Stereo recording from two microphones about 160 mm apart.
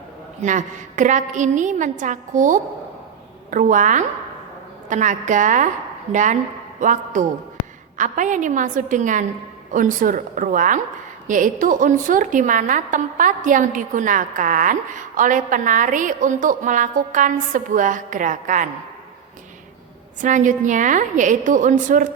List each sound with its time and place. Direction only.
0.4 s a woman's voice: 50° right (ahead or behind)
20.2 s a woman's voice: 55° right (ahead or behind)